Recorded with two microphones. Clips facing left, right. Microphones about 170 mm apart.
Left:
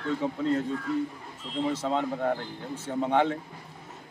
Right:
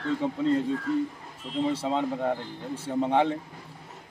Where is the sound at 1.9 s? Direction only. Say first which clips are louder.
Even; 5° right (ahead or behind).